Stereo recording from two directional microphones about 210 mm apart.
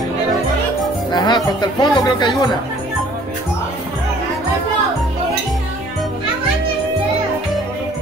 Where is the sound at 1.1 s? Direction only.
20° left (ahead or behind).